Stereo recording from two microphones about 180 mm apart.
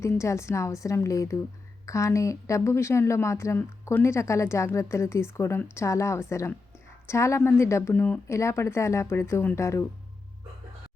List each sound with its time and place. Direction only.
0.0 s a woman's voice: 15° left (ahead or behind)